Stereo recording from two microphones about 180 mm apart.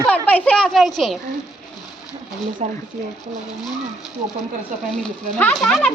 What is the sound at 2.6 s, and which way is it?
Speech, 40° right (ahead or behind).